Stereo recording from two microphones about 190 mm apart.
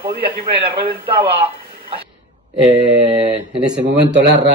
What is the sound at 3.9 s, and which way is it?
Speech, 65° right (ahead or behind).